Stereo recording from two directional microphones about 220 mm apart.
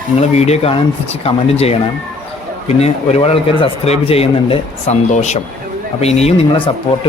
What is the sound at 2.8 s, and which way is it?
Speech, 30° left (ahead or behind).